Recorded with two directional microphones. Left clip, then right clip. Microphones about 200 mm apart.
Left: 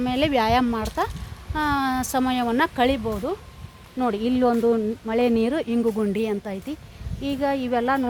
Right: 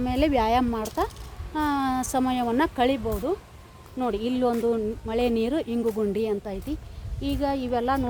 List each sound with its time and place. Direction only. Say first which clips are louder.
0.0 s speech: left 2 dB; 10° left (ahead or behind); by 8.0 s 25° left (ahead or behind)